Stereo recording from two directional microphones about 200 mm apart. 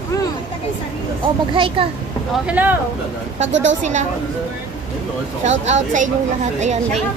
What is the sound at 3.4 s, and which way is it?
Speech, 65° right (ahead or behind).